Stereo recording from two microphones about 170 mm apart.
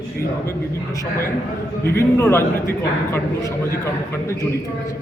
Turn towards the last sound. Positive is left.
turn(degrees=15)  # may be behind; listen again after turning